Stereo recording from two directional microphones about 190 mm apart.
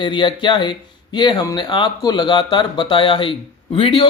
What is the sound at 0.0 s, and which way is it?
Speech, 25° left (ahead or behind).